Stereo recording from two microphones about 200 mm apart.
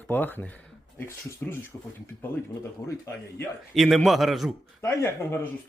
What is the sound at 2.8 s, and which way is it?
Speech, 15° left (ahead or behind).